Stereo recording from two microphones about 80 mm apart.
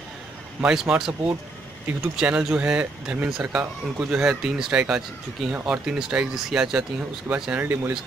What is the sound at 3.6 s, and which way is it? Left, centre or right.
Speech, centre.